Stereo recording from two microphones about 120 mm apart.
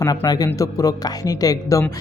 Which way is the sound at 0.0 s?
30° left (ahead or behind).